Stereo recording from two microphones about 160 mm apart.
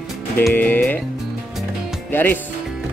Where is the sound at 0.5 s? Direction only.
10° left (ahead or behind).